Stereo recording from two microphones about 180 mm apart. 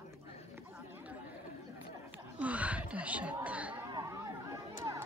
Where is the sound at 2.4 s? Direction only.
5° right (ahead or behind).